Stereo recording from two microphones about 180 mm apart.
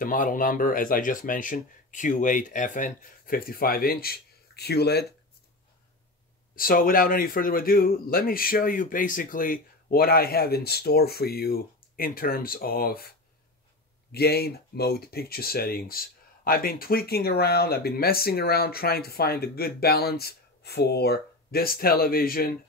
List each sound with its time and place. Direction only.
0.0 s speech: 50° left (ahead or behind); by 5.0 s 65° left (ahead or behind)
6.5 s speech: 50° left (ahead or behind)
14.1 s speech: 60° left (ahead or behind)